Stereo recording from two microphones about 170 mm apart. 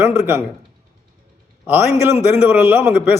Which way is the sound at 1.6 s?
10° right (ahead or behind).